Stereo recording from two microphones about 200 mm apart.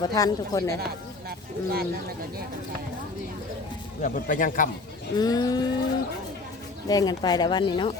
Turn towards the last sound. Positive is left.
turn(degrees=20)  # may be behind; listen again after turning